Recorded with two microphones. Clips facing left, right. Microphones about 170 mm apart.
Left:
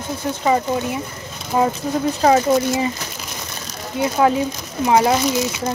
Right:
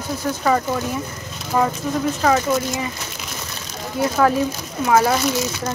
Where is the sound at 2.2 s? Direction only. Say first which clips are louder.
Left 5 dB; 30° left (ahead or behind).